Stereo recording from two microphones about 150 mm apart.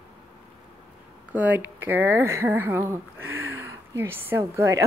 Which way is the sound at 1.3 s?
10° right (ahead or behind).